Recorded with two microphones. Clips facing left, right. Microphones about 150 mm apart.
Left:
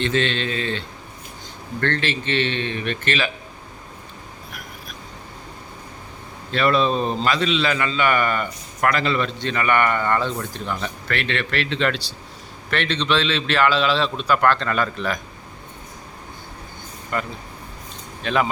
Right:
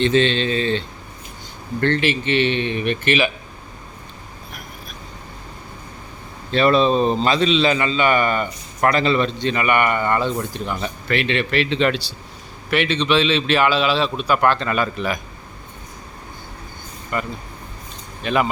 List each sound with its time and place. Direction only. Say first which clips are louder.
0.0 s a man's voice: right 5 dB; 20° right (ahead or behind)
1.8 s a man's voice: right 4 dB; 10° right (ahead or behind)
6.5 s a man's voice: right 4 dB; 25° right (ahead or behind); by 15.2 s 10° right (ahead or behind)
17.1 s speech: right 1 dB; 5° right (ahead or behind)